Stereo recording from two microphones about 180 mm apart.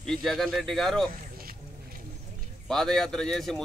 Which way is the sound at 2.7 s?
5° left (ahead or behind).